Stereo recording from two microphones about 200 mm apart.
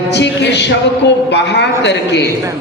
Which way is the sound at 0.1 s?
60° left (ahead or behind).